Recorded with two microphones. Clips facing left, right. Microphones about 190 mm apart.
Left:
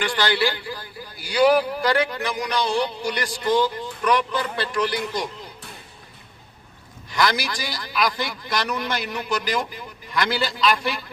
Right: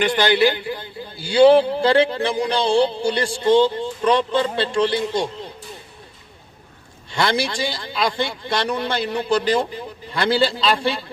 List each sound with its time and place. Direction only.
0.0 s a man's voice: 20° right (ahead or behind)
7.1 s a man's voice: 30° right (ahead or behind)